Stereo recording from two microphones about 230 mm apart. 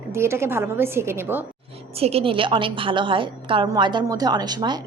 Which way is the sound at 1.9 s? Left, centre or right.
Right.